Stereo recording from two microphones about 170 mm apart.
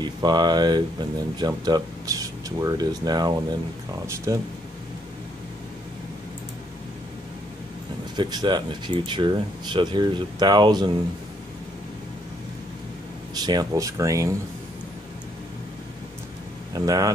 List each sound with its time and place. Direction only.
0.0 s speech: 25° right (ahead or behind)
8.2 s speech: 25° right (ahead or behind)
13.3 s speech: 25° right (ahead or behind)
16.7 s speech: 20° right (ahead or behind)